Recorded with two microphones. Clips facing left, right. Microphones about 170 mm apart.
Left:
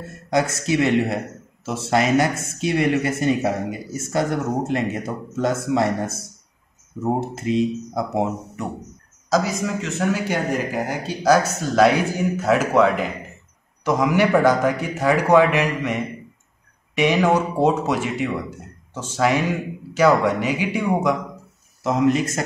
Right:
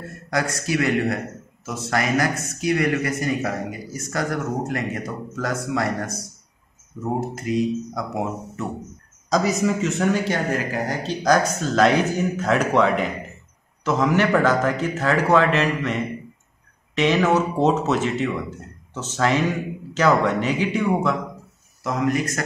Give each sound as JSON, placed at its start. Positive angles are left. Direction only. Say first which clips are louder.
{"t": 0.3, "sound": "speech", "louder": "left 3 dB", "side_deg": 25}
{"t": 9.3, "sound": "speech", "louder": "right 1 dB", "side_deg": 0}
{"t": 21.8, "sound": "speech", "louder": "left 4 dB", "side_deg": 25}